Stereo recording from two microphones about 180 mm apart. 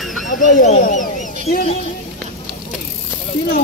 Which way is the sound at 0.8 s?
45° left (ahead or behind).